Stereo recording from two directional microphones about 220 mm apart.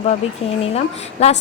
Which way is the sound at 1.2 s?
30° left (ahead or behind).